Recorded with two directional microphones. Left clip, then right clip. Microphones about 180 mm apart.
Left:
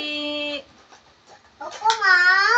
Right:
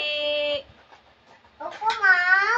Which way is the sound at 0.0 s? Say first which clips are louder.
Right 2 dB; centre (ahead or behind).